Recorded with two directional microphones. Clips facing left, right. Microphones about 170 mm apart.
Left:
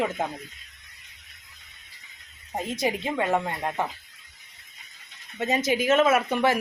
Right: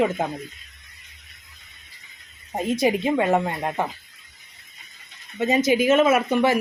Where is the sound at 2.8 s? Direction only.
15° right (ahead or behind).